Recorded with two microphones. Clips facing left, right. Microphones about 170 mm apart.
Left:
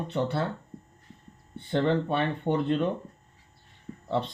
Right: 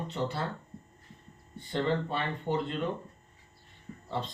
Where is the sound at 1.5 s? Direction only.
65° left (ahead or behind).